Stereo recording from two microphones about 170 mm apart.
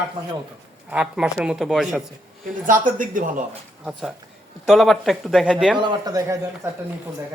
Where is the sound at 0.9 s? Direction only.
5° right (ahead or behind).